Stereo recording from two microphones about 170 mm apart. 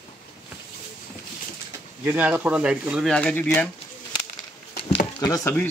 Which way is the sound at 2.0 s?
10° right (ahead or behind).